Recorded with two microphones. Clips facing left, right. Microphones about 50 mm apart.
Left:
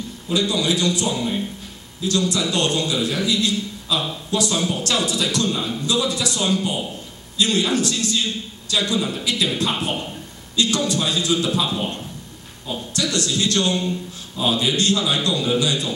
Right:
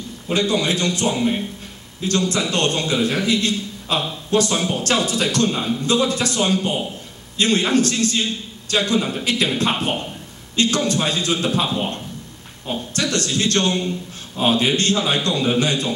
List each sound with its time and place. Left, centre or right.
0.3 s a man's voice: right